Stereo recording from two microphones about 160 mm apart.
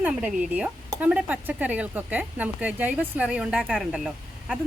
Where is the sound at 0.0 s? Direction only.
5° right (ahead or behind).